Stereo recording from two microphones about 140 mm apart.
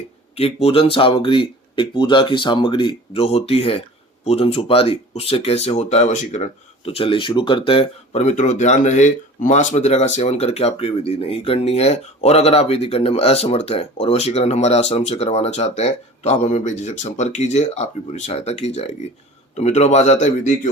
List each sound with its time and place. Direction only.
0.3 s speech: 45° left (ahead or behind)